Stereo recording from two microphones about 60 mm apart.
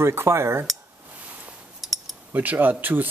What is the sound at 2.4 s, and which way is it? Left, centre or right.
Speech, right.